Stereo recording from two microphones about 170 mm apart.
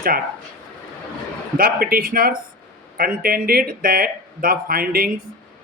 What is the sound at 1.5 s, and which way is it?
Speech, 60° right (ahead or behind).